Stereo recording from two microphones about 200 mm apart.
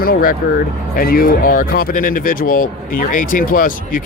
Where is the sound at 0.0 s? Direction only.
45° left (ahead or behind).